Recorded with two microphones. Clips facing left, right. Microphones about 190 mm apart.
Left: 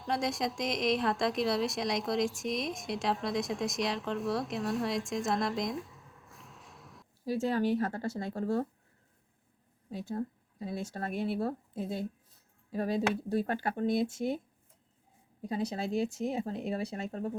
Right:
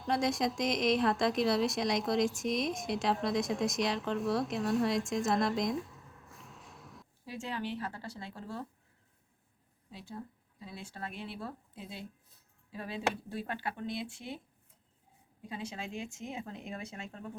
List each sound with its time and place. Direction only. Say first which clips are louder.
0.0 s speech: right 1 dB; centre (ahead or behind)
7.3 s speech: left 9 dB; 40° left (ahead or behind)
9.9 s speech: left 9 dB; 45° left (ahead or behind)